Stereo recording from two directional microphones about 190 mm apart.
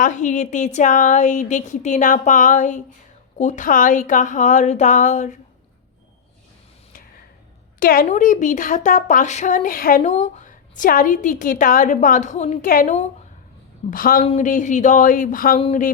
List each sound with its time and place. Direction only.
0.0 s a woman's voice: 40° left (ahead or behind)
7.8 s a woman's voice: 50° left (ahead or behind)